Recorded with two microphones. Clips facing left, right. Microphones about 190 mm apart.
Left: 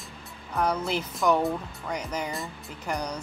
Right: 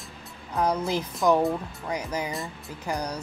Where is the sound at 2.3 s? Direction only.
Centre (ahead or behind).